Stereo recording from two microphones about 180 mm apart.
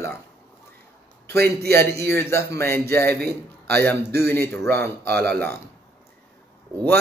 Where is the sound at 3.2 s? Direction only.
60° right (ahead or behind).